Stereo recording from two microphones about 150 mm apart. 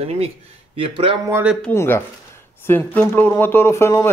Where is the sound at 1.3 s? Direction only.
10° right (ahead or behind).